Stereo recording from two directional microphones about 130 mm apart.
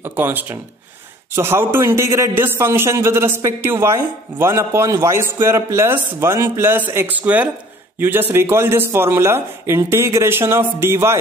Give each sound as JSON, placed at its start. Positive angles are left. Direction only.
{"t": 0.0, "sound": "a man's voice", "side_deg": -15}